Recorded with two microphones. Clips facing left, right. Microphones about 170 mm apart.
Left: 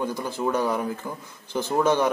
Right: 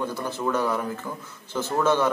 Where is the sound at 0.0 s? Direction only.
15° left (ahead or behind).